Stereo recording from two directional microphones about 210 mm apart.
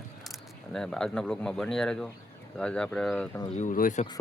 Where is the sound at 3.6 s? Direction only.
40° left (ahead or behind).